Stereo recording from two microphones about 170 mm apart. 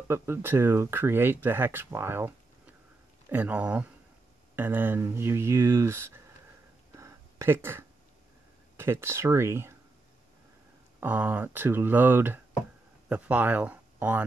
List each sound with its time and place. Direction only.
0.1 s speech: 15° right (ahead or behind)
7.0 s a sound: 15° right (ahead or behind)
8.7 s speech: 15° right (ahead or behind)
11.0 s speech: 10° right (ahead or behind)